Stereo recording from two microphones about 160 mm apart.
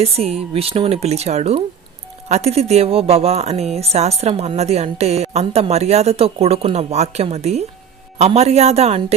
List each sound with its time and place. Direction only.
0.0 s speech: 40° right (ahead or behind)